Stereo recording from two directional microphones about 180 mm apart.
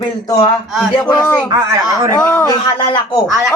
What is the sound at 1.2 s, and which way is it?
A man's voice, 10° left (ahead or behind).